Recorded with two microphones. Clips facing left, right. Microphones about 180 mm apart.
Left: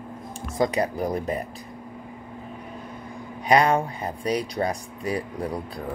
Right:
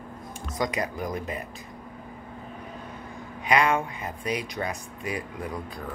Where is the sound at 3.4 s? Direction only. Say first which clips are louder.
Left 4 dB; 35° left (ahead or behind).